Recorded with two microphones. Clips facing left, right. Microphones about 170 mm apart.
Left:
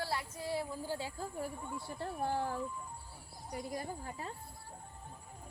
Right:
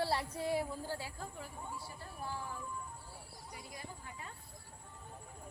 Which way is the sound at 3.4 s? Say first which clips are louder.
Left 10 dB; 45° left (ahead or behind).